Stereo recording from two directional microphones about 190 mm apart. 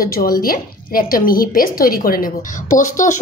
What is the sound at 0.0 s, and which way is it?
A woman's voice, 50° left (ahead or behind).